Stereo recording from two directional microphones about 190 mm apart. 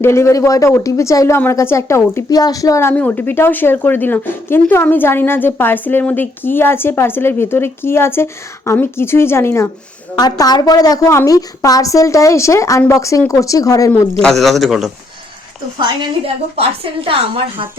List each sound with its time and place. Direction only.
0.0 s speech: 15° left (ahead or behind)
14.2 s speech: centre (ahead or behind)
15.8 s a woman's voice: 25° right (ahead or behind)